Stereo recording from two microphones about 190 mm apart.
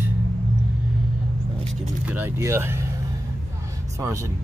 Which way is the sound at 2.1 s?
15° right (ahead or behind).